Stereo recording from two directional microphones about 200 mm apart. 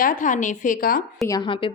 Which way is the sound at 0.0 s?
40° left (ahead or behind).